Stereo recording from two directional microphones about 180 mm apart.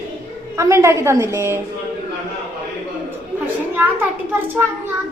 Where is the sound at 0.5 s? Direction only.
15° right (ahead or behind).